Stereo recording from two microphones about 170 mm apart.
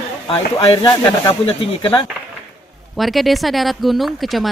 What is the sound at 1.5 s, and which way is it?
Speech, 30° left (ahead or behind).